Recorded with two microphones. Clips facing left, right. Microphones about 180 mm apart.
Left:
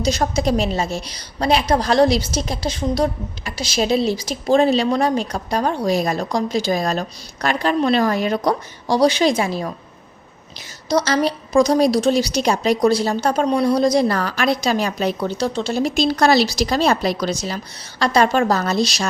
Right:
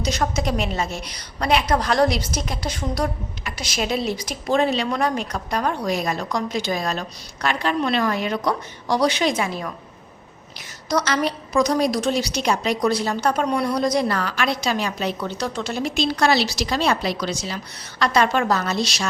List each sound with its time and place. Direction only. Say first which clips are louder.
0.0 s a woman's voice: left 4 dB; 30° left (ahead or behind)
10.8 s a woman's voice: left 4 dB; 30° left (ahead or behind)